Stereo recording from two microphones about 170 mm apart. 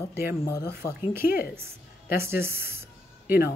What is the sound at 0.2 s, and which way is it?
Speech, 65° left (ahead or behind).